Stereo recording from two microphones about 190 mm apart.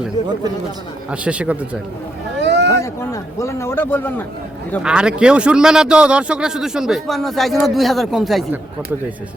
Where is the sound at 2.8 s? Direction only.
15° left (ahead or behind).